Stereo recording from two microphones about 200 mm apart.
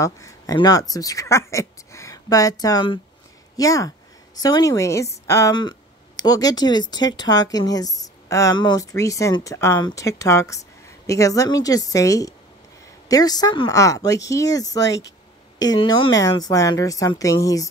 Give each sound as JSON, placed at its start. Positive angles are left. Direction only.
{"t": 0.0, "sound": "speech", "side_deg": 15}